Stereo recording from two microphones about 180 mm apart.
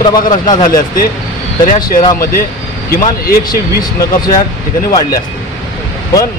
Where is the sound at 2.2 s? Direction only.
55° left (ahead or behind).